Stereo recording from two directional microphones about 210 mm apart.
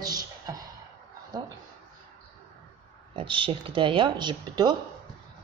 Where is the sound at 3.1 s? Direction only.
25° right (ahead or behind).